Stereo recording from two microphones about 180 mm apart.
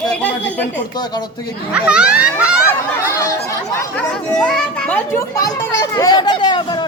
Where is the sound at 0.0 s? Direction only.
5° left (ahead or behind).